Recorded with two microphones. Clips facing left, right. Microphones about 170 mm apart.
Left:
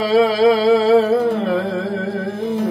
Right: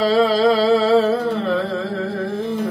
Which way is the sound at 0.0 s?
15° left (ahead or behind).